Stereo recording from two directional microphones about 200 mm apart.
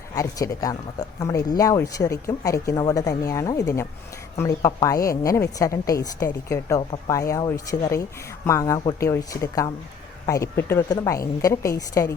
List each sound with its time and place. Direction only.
0.1 s speech: 15° left (ahead or behind)